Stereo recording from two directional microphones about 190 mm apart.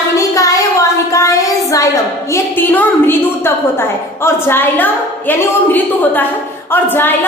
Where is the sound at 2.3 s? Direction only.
10° left (ahead or behind).